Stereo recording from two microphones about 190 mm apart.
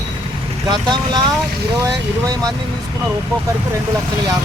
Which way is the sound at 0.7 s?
25° right (ahead or behind).